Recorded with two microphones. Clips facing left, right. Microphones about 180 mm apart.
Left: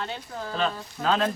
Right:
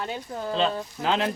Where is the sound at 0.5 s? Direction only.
20° right (ahead or behind).